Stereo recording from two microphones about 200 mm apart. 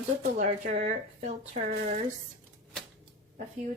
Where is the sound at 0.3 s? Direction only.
40° right (ahead or behind).